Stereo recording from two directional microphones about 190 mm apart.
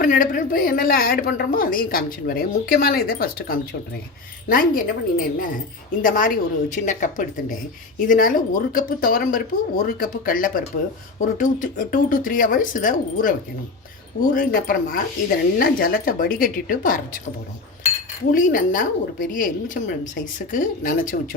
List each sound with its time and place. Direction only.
0.0 s a woman's voice: 45° left (ahead or behind)
14.3 s a woman's voice: 50° left (ahead or behind)
18.3 s a woman's voice: 45° left (ahead or behind)